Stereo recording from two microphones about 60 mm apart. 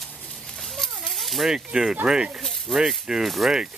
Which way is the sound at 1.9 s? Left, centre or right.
Centre.